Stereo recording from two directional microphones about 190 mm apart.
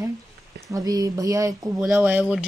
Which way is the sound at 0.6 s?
20° right (ahead or behind).